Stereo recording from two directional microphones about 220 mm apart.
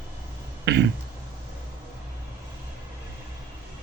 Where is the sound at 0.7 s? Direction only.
50° right (ahead or behind).